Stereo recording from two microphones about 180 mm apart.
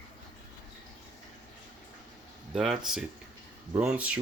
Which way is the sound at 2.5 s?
Centre (ahead or behind).